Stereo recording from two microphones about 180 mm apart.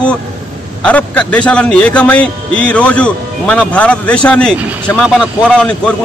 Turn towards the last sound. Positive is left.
turn(degrees=5)  # may be behind; listen again after turning